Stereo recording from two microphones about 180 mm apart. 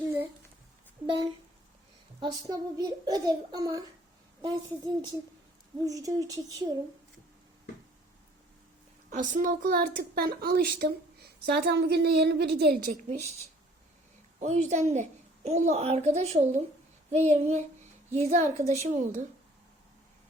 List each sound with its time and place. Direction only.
2.2 s a child's voice: 20° right (ahead or behind)
9.0 s a woman's voice: 50° right (ahead or behind)
14.3 s a child's voice: 40° right (ahead or behind)